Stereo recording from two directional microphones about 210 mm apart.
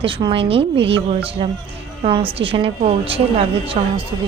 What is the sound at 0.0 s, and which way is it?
Speech, 25° right (ahead or behind).